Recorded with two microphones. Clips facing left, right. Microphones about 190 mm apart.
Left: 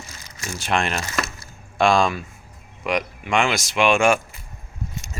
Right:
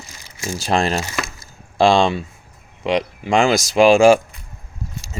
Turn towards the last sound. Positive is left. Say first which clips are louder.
# right 7 dB
turn(degrees=-35)  # may be behind; listen again after turning